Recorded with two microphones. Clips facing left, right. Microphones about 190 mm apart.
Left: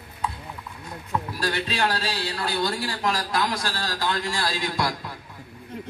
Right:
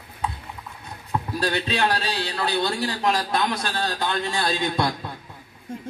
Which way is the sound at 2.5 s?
25° right (ahead or behind).